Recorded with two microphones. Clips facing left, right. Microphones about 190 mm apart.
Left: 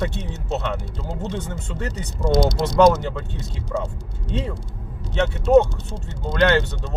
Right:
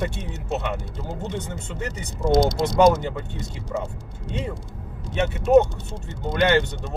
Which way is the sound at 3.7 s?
15° right (ahead or behind).